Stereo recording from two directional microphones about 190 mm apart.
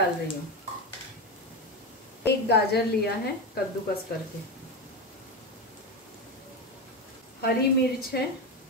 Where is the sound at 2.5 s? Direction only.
60° left (ahead or behind).